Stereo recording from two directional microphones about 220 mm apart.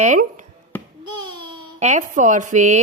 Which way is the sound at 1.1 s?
20° right (ahead or behind).